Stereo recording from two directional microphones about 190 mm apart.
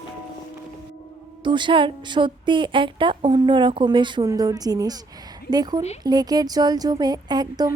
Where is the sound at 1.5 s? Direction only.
25° right (ahead or behind).